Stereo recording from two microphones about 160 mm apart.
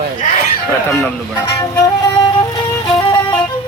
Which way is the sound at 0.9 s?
10° left (ahead or behind).